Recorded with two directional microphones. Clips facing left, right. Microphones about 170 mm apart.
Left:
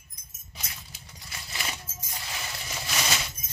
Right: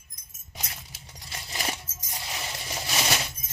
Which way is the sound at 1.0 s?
25° right (ahead or behind).